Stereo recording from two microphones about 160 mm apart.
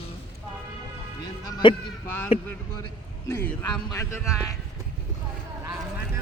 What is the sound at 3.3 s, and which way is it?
Speech, 15° left (ahead or behind).